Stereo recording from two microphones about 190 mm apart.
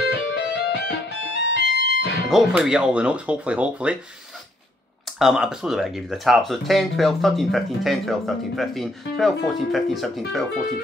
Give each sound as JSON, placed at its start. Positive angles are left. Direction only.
{"t": 0.3, "sound": "music", "side_deg": 65}
{"t": 1.7, "sound": "music", "side_deg": -70}
{"t": 2.2, "sound": "speech", "side_deg": 0}
{"t": 5.2, "sound": "speech", "side_deg": -5}